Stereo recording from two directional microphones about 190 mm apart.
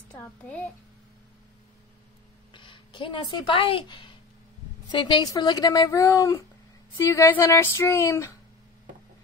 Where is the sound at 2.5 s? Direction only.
25° left (ahead or behind).